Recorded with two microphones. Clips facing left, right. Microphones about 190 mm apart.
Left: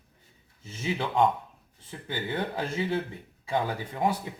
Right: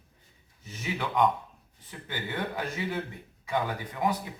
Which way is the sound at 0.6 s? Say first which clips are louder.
Left 3 dB; 25° left (ahead or behind).